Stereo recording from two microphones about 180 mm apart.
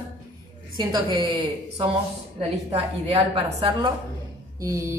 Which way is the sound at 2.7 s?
35° right (ahead or behind).